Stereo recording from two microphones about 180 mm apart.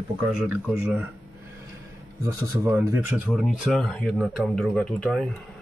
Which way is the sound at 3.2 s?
Centre (ahead or behind).